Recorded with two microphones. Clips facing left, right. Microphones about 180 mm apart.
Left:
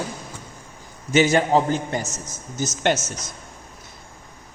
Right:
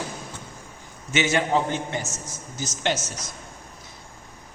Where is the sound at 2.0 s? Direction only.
20° left (ahead or behind).